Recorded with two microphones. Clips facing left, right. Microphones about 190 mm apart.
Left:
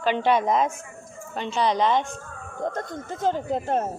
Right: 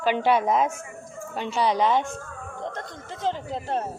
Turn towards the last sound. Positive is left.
turn(degrees=45)  # may be behind; listen again after turning